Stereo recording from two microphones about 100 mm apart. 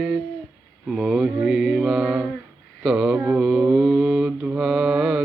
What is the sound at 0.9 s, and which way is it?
Mantra, 10° right (ahead or behind).